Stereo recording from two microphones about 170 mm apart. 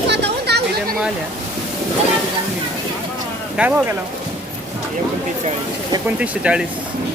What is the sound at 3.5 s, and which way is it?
Speech, 10° right (ahead or behind).